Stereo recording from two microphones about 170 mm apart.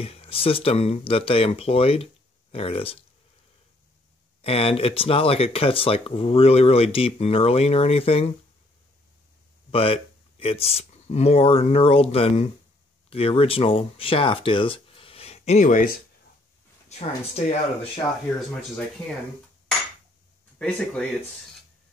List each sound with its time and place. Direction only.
0.0 s speech: 35° left (ahead or behind)
4.4 s speech: 35° left (ahead or behind)
9.7 s speech: 35° left (ahead or behind)
16.9 s speech: 40° left (ahead or behind)
20.5 s speech: 10° left (ahead or behind)